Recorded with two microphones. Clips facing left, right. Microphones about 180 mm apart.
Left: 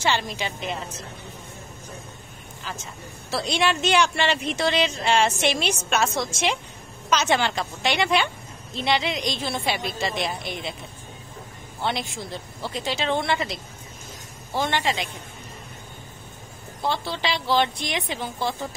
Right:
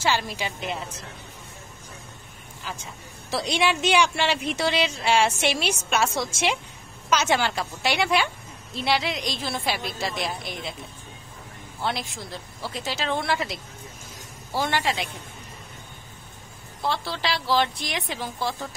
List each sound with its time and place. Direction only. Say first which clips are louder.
0.0 s speech: left 1 dB; 5° right (ahead or behind)
2.6 s a woman's voice: left 1 dB; 10° right (ahead or behind)
11.8 s a woman's voice: left 2 dB; centre (ahead or behind)
16.8 s a woman's voice: left 1 dB; centre (ahead or behind)